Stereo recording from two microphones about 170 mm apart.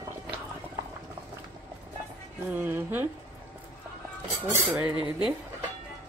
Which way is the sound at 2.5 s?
10° right (ahead or behind).